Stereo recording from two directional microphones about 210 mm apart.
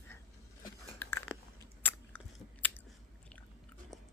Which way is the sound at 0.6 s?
15° left (ahead or behind).